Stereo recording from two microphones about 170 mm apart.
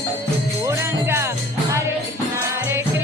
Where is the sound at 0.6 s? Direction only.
15° right (ahead or behind).